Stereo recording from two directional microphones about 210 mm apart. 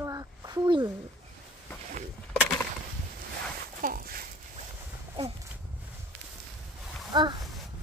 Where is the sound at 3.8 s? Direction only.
45° right (ahead or behind).